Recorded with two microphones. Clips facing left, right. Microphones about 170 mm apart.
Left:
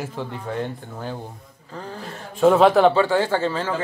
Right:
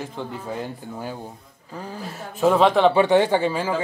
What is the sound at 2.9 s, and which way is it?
Speech, 20° right (ahead or behind).